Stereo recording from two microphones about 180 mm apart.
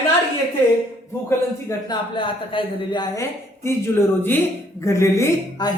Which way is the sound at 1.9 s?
25° left (ahead or behind).